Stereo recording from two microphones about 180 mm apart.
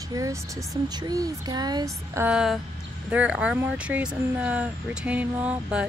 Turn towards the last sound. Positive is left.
turn(degrees=-5)  # may be behind; listen again after turning